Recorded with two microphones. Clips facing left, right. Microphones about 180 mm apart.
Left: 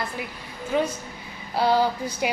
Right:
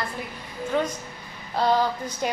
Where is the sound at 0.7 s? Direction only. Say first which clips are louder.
Left 2 dB; 15° left (ahead or behind).